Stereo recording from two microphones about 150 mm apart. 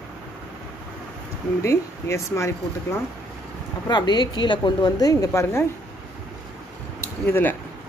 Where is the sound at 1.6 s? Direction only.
20° left (ahead or behind).